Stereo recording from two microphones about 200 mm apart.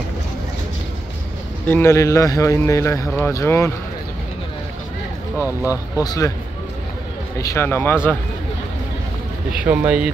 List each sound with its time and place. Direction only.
1.7 s speech: 15° left (ahead or behind)
5.6 s speech: 15° left (ahead or behind)
7.3 s speech: 15° left (ahead or behind)
9.5 s speech: 5° right (ahead or behind)